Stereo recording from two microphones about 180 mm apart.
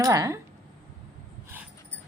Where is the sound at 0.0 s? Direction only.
15° right (ahead or behind).